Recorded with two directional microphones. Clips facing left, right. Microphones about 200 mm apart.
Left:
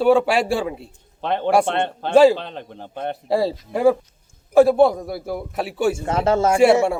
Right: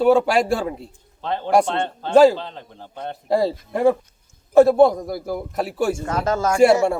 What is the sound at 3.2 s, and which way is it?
Speech, 5° left (ahead or behind).